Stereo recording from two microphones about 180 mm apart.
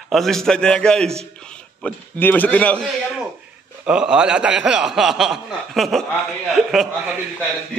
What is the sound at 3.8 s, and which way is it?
A man's voice, 5° right (ahead or behind).